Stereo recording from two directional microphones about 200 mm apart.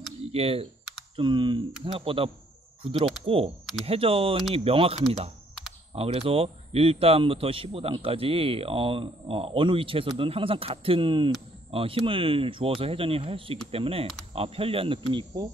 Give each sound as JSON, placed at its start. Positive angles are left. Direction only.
{"t": 0.3, "sound": "speech", "side_deg": -30}
{"t": 5.9, "sound": "speech", "side_deg": -25}